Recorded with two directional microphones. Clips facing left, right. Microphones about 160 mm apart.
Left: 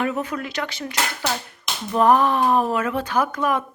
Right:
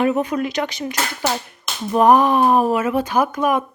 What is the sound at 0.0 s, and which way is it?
Speech, 20° right (ahead or behind).